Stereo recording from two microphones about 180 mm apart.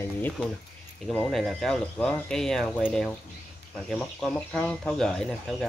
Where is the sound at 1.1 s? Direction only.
5° left (ahead or behind).